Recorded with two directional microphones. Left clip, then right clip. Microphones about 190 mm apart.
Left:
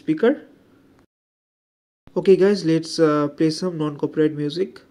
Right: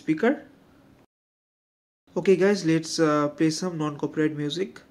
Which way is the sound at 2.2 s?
10° left (ahead or behind).